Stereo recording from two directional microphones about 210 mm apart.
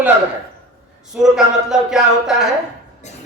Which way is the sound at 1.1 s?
Centre (ahead or behind).